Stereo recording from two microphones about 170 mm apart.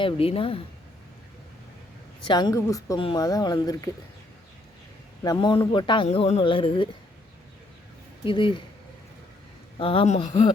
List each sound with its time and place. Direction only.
0.0 s speech: 35° left (ahead or behind)
2.2 s speech: 25° left (ahead or behind)
5.2 s speech: 25° left (ahead or behind)
8.2 s speech: 30° left (ahead or behind)
9.7 s speech: 30° left (ahead or behind)